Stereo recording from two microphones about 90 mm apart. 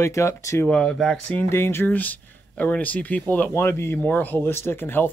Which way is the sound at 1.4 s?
25° left (ahead or behind).